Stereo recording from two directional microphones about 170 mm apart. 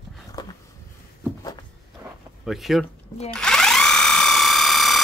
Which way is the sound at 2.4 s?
Centre (ahead or behind).